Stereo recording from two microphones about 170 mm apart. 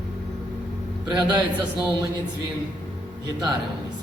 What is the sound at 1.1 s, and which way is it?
Speech, 25° right (ahead or behind).